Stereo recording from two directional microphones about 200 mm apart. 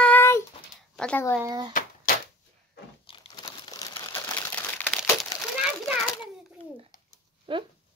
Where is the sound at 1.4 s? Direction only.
20° right (ahead or behind).